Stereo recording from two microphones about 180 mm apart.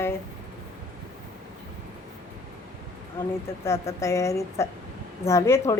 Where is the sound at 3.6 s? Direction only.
15° left (ahead or behind).